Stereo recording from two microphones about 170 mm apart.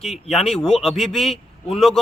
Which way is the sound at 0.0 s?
Centre (ahead or behind).